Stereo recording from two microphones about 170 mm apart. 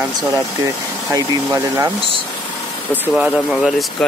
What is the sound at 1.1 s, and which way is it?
Speech, 20° right (ahead or behind).